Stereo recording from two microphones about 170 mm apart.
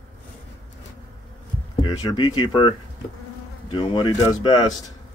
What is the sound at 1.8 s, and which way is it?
Speech, 25° left (ahead or behind).